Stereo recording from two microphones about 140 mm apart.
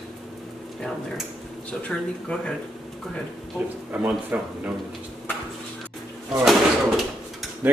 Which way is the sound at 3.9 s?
10° right (ahead or behind).